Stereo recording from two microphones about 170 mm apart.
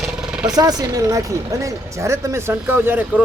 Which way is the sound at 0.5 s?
20° right (ahead or behind).